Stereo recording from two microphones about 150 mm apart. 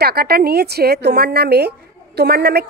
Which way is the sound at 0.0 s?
90° right.